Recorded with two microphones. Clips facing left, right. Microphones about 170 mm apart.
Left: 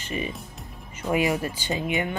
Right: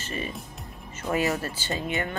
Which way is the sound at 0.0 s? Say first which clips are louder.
Left 3 dB; 15° left (ahead or behind).